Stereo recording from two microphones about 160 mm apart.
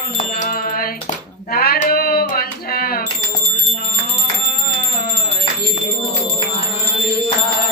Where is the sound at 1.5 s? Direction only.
65° left (ahead or behind).